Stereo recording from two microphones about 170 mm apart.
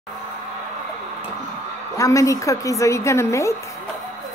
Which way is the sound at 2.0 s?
20° left (ahead or behind).